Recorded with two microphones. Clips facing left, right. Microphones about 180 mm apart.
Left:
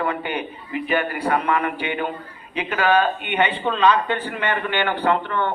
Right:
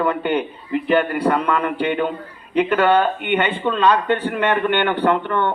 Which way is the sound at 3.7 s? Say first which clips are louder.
Right 2 dB; 55° right (ahead or behind).